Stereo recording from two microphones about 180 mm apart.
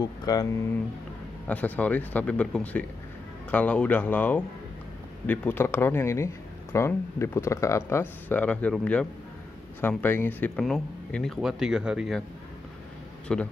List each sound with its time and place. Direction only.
0.0 s speech: 20° left (ahead or behind)
1.5 s speech: 10° left (ahead or behind)
13.3 s speech: 5° left (ahead or behind)